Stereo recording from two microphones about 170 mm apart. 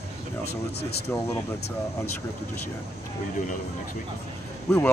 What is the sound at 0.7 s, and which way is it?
Speech, 70° left (ahead or behind).